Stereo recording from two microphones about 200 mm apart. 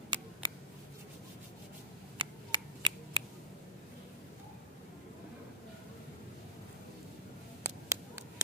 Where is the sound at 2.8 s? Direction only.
25° right (ahead or behind).